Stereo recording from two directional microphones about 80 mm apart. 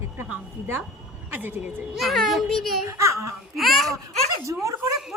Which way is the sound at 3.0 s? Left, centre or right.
Right.